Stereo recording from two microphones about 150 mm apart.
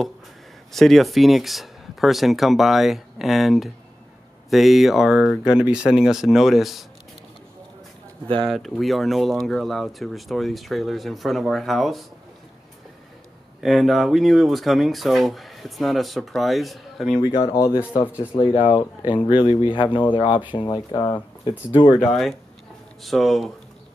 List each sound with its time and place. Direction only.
0.7 s speech: centre (ahead or behind)
8.5 s speech: centre (ahead or behind)
13.6 s speech: centre (ahead or behind)
17.3 s speech: 35° left (ahead or behind)
23.0 s speech: centre (ahead or behind)